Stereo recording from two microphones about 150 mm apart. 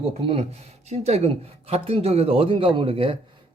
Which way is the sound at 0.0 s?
40° right (ahead or behind).